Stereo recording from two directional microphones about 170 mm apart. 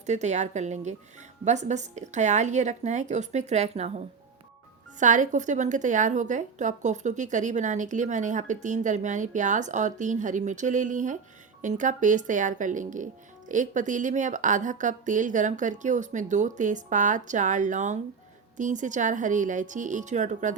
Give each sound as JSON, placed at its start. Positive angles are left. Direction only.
{"t": 0.0, "sound": "a woman's voice", "side_deg": -40}